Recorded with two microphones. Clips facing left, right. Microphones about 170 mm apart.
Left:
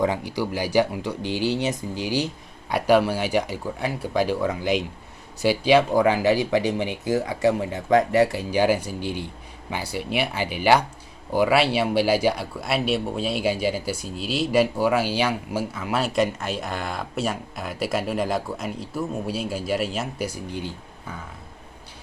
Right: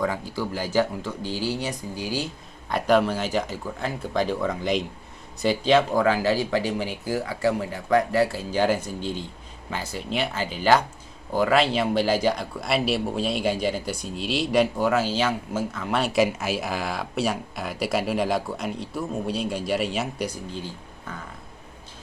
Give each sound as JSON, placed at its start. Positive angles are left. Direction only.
{"t": 0.3, "sound": "a man's voice", "side_deg": 15}